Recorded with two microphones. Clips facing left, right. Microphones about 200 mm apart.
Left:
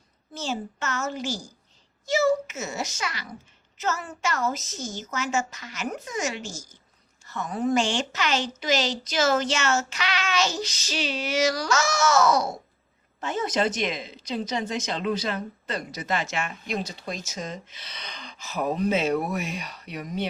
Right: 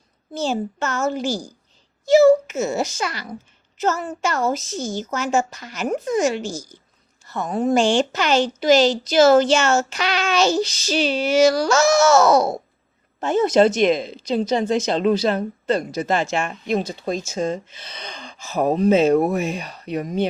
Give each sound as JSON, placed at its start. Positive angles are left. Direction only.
{"t": 0.3, "sound": "speech", "side_deg": -30}
{"t": 16.5, "sound": "speech", "side_deg": -50}
{"t": 17.1, "sound": "speech", "side_deg": -30}
{"t": 18.2, "sound": "gasp", "side_deg": -45}
{"t": 18.5, "sound": "speech", "side_deg": -35}
{"t": 18.9, "sound": "speech", "side_deg": -45}
{"t": 19.4, "sound": "speech", "side_deg": -30}